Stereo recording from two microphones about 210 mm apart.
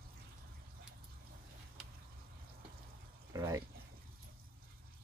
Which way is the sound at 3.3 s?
15° right (ahead or behind).